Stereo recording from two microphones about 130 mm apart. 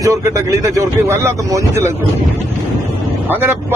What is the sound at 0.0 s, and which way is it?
Speech, 25° right (ahead or behind).